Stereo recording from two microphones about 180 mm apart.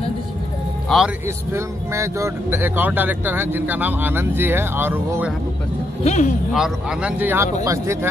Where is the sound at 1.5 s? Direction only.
15° right (ahead or behind).